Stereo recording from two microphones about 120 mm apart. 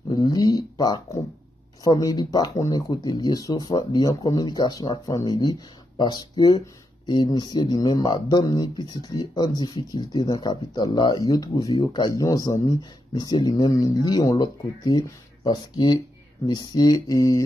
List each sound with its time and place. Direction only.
0.1 s speech: 35° left (ahead or behind)